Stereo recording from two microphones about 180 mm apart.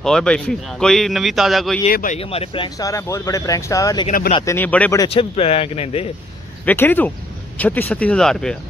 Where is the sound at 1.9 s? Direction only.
50° left (ahead or behind).